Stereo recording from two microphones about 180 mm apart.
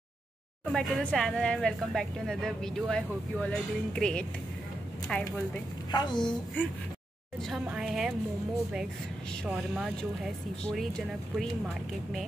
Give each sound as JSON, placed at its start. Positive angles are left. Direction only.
{"t": 0.7, "sound": "speech", "side_deg": 0}
{"t": 5.9, "sound": "a woman's voice", "side_deg": 25}
{"t": 6.2, "sound": "a child's voice", "side_deg": 10}
{"t": 7.6, "sound": "speech", "side_deg": -5}
{"t": 9.5, "sound": "speech", "side_deg": -5}